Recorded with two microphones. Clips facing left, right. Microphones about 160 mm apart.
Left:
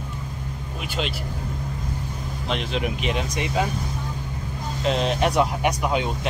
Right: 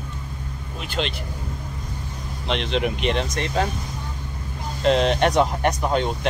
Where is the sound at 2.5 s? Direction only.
5° left (ahead or behind).